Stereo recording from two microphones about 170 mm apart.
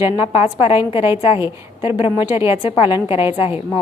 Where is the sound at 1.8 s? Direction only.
30° left (ahead or behind).